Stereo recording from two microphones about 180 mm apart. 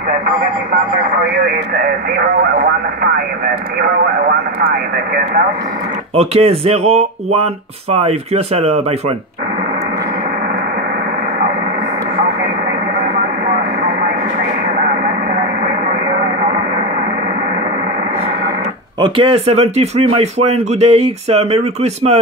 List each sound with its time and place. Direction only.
6.1 s speech: 35° right (ahead or behind)
18.9 s speech: 30° right (ahead or behind)